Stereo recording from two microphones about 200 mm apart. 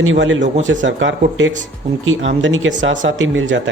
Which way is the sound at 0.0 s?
75° right (ahead or behind).